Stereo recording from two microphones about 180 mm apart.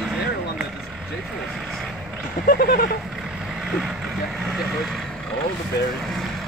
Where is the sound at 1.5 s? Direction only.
Centre (ahead or behind).